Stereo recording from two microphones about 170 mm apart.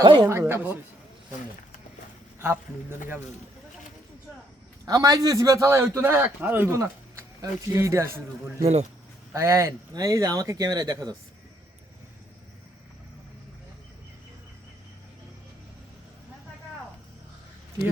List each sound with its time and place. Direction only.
0.0 s a man's voice: 25° right (ahead or behind)
2.4 s a man's voice: 15° right (ahead or behind)
4.9 s a man's voice: 20° right (ahead or behind)
8.6 s speech: 40° right (ahead or behind)
9.3 s speech: 15° right (ahead or behind)